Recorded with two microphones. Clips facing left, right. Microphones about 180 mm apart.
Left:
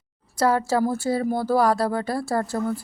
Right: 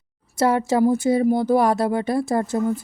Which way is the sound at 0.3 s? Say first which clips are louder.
Right 2 dB; 25° right (ahead or behind).